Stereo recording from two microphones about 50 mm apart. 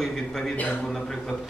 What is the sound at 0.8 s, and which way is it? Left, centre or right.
Speech, centre.